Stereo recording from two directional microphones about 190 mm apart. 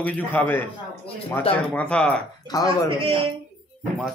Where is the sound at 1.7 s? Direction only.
5° left (ahead or behind).